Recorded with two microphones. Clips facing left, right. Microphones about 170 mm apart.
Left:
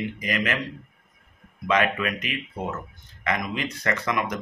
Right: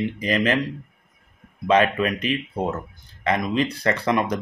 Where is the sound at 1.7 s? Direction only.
30° right (ahead or behind).